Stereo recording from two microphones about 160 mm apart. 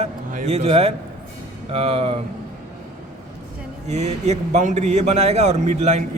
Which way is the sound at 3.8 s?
45° right (ahead or behind).